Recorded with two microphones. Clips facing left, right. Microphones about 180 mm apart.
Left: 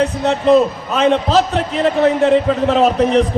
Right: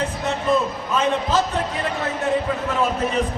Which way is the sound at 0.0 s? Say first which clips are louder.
Left 9 dB; 70° left (ahead or behind).